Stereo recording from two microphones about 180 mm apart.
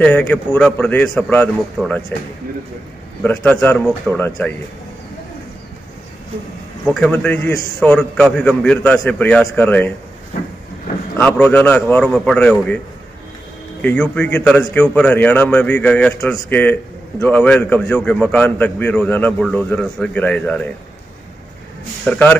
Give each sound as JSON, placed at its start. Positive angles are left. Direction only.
{"t": 0.0, "sound": "a man's voice", "side_deg": 5}
{"t": 3.2, "sound": "a man's voice", "side_deg": 10}
{"t": 6.9, "sound": "a man's voice", "side_deg": 5}
{"t": 11.1, "sound": "a man's voice", "side_deg": 5}
{"t": 13.7, "sound": "a man's voice", "side_deg": 10}
{"t": 22.0, "sound": "a man's voice", "side_deg": 5}